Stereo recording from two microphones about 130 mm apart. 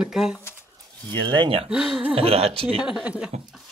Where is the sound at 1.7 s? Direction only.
5° right (ahead or behind).